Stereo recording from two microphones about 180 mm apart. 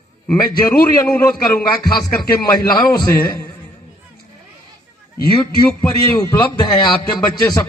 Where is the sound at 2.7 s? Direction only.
20° left (ahead or behind).